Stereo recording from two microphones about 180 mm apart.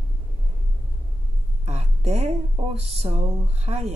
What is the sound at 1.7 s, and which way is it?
Speech, 35° right (ahead or behind).